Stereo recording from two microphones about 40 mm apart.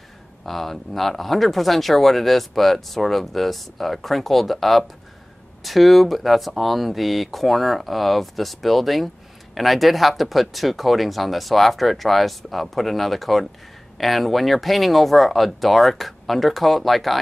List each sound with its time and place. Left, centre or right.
0.5 s speech: centre